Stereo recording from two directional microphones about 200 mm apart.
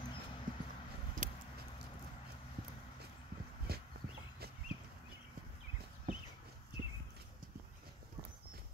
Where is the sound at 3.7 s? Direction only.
50° right (ahead or behind).